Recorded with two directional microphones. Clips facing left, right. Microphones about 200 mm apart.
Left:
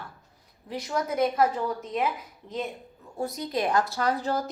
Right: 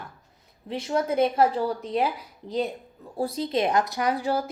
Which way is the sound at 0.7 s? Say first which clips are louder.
Right 4 dB; 25° right (ahead or behind).